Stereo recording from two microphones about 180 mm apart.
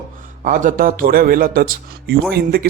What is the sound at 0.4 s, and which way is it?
A man's voice, 50° right (ahead or behind).